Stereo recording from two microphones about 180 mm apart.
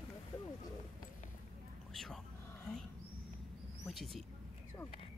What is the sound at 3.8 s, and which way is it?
Speech, centre (ahead or behind).